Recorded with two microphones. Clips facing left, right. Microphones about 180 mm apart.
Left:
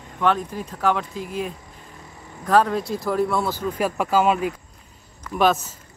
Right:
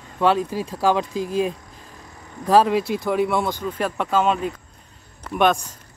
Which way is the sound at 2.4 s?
10° right (ahead or behind).